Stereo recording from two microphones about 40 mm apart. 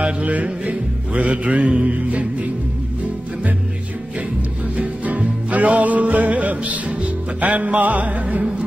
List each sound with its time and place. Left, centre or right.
0.0 s music: right
4.7 s music: right